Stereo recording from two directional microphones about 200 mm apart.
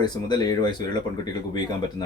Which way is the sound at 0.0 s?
20° left (ahead or behind).